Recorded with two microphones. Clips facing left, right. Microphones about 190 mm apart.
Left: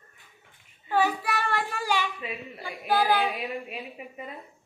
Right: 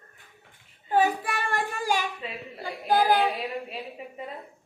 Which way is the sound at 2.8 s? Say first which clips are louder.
Right 2 dB; 40° right (ahead or behind).